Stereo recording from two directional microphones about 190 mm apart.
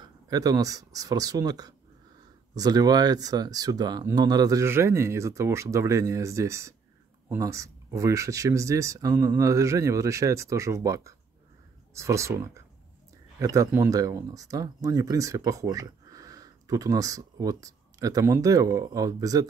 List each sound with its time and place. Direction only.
0.0 s speech: 20° right (ahead or behind)